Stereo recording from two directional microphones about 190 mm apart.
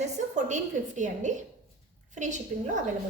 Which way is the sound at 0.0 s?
40° right (ahead or behind).